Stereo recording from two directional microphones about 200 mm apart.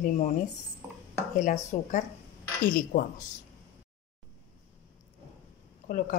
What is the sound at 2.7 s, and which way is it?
Speech, 45° left (ahead or behind).